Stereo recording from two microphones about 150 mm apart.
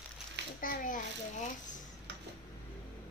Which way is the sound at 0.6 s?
65° left (ahead or behind).